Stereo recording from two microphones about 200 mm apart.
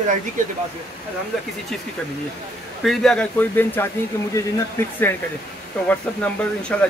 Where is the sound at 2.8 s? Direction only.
5° left (ahead or behind).